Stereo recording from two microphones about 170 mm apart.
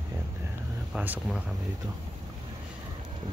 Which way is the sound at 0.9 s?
5° right (ahead or behind).